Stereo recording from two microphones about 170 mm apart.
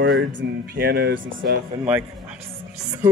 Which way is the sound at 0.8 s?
70° right (ahead or behind).